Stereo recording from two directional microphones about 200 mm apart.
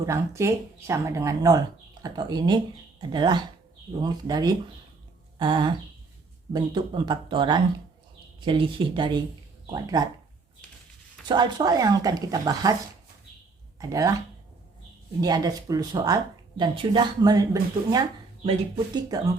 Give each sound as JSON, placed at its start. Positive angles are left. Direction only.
{"t": 0.0, "sound": "speech", "side_deg": -15}
{"t": 11.3, "sound": "speech", "side_deg": -20}
{"t": 13.7, "sound": "speech", "side_deg": -15}
{"t": 15.2, "sound": "speech", "side_deg": -20}